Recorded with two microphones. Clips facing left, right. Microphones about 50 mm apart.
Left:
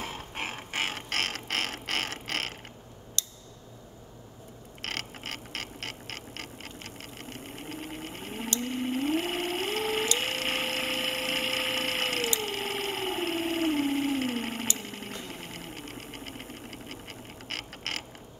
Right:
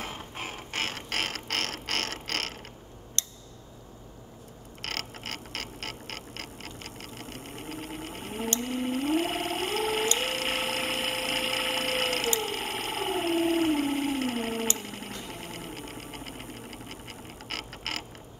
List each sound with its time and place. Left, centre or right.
0.3 s a sound: left
0.7 s ratchet: centre
3.2 s tick: right
4.8 s a sound: centre
12.4 s howl: centre
14.8 s engine: centre